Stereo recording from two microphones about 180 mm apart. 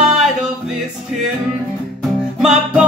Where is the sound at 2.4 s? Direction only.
5° right (ahead or behind).